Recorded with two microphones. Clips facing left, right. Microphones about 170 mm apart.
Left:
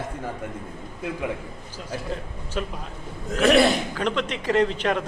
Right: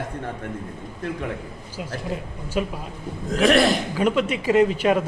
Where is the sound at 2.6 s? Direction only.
10° right (ahead or behind).